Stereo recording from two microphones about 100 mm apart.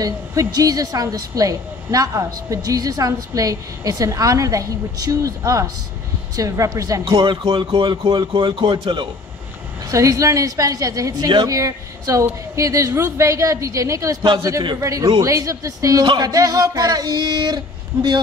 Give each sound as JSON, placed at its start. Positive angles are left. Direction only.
{"t": 0.0, "sound": "a woman's voice", "side_deg": -35}
{"t": 7.2, "sound": "speech", "side_deg": -50}
{"t": 9.8, "sound": "a woman's voice", "side_deg": -35}